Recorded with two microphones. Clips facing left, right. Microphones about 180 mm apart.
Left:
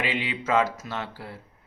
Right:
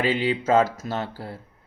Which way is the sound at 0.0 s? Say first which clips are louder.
Right 6 dB; 35° right (ahead or behind).